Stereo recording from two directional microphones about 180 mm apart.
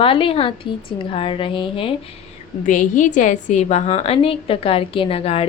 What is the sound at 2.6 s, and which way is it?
A woman's voice, 45° left (ahead or behind).